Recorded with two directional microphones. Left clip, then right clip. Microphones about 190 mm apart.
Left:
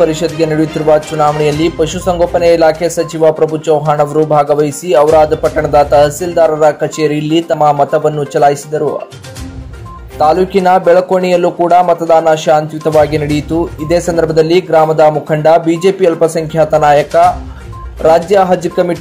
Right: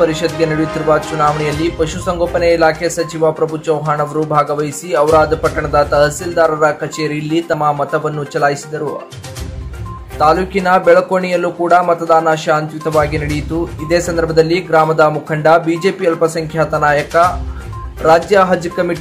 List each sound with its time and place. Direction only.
0.0 s speech: 15° left (ahead or behind)
4.1 s speech: centre (ahead or behind)
4.5 s speech: 15° left (ahead or behind)
10.1 s speech: 15° left (ahead or behind)